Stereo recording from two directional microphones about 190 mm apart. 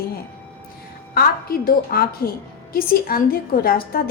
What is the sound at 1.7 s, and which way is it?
A woman's voice, 50° left (ahead or behind).